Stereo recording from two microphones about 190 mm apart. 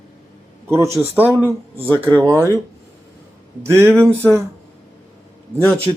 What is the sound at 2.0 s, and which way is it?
Speech, 20° right (ahead or behind).